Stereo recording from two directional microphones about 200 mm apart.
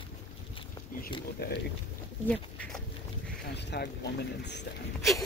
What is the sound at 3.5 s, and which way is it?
Speech, 60° left (ahead or behind).